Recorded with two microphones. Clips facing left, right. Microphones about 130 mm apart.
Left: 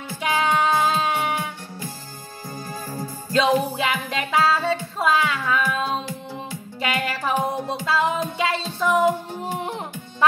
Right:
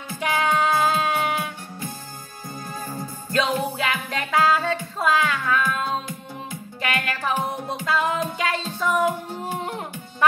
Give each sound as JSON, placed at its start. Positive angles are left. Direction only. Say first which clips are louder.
{"t": 0.2, "sound": "music", "louder": "left 1 dB", "side_deg": 20}
{"t": 3.3, "sound": "music", "louder": "left 4 dB", "side_deg": 20}